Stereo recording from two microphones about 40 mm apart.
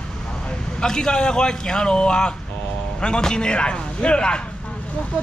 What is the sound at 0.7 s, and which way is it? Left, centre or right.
A man's voice, centre.